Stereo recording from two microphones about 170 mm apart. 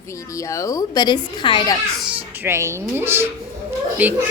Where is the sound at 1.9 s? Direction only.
5° right (ahead or behind).